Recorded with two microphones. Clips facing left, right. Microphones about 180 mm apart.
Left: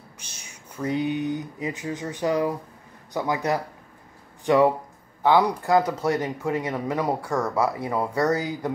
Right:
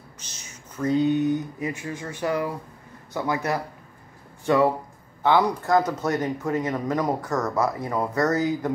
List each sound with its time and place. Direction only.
0.7 s speech: 10° left (ahead or behind)